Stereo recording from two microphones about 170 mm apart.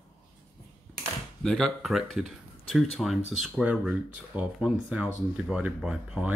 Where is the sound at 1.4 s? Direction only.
5° left (ahead or behind).